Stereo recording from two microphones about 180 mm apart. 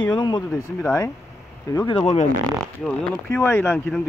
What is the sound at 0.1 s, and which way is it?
Speech, 25° left (ahead or behind).